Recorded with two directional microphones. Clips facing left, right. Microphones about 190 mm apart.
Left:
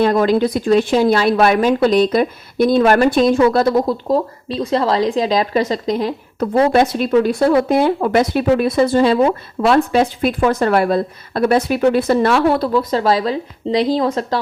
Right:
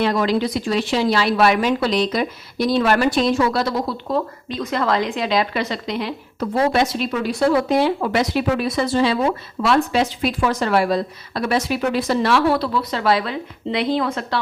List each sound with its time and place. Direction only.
0.0 s speech: 50° left (ahead or behind)